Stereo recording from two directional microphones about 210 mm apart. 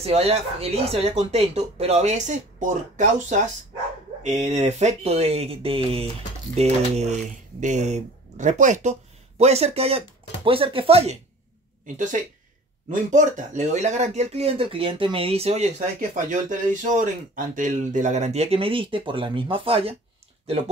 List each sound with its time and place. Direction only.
0.0 s speech: 30° right (ahead or behind)